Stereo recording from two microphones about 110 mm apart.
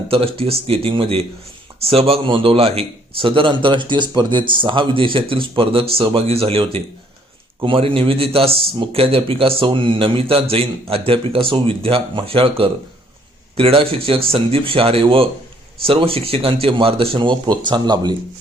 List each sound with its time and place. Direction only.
0.1 s a man's voice: 60° right (ahead or behind); by 18.2 s 40° right (ahead or behind)